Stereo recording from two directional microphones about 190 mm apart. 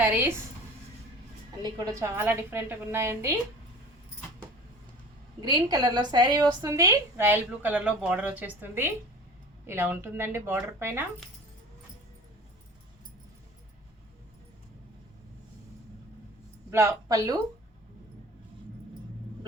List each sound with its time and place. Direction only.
0.0 s a woman's voice: 10° right (ahead or behind)
1.6 s a woman's voice: 20° right (ahead or behind)
5.4 s a woman's voice: 20° right (ahead or behind)
16.7 s a woman's voice: 15° right (ahead or behind)